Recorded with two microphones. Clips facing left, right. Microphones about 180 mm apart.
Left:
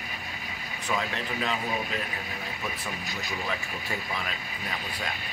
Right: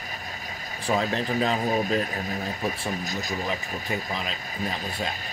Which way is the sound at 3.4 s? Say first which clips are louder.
Right 3 dB; 15° right (ahead or behind).